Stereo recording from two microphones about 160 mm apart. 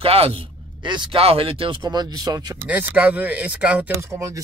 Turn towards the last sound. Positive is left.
turn(degrees=-20)  # may be behind; listen again after turning